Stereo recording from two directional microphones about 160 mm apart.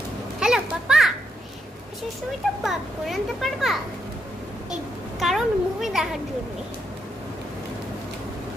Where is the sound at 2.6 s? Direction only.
Centre (ahead or behind).